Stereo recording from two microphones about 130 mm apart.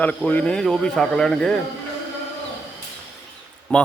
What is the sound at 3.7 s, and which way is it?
Speech, 10° left (ahead or behind).